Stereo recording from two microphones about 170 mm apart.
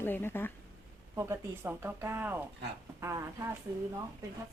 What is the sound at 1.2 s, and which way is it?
Speech, 15° right (ahead or behind).